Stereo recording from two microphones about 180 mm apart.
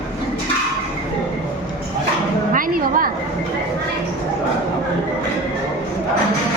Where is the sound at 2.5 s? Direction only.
50° right (ahead or behind).